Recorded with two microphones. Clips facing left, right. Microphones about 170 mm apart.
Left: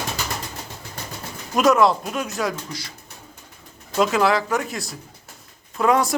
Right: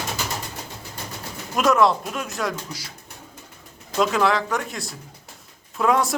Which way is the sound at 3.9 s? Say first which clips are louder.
Left 1 dB; 5° left (ahead or behind).